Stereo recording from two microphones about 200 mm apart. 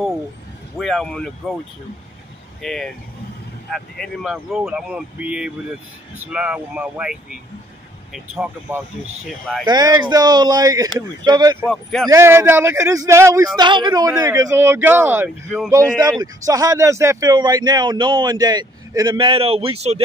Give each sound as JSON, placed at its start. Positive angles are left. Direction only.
{"t": 0.7, "sound": "speech", "side_deg": 0}
{"t": 2.6, "sound": "speech", "side_deg": 0}
{"t": 9.7, "sound": "speech", "side_deg": -20}
{"t": 11.6, "sound": "speech", "side_deg": 0}
{"t": 12.1, "sound": "speech", "side_deg": -10}